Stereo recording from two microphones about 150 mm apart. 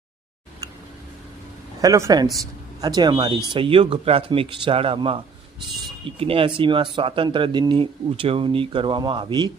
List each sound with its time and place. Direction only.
1.8 s a man's voice: 20° right (ahead or behind)